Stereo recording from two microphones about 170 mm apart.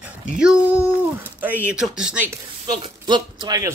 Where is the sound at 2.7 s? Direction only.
25° right (ahead or behind).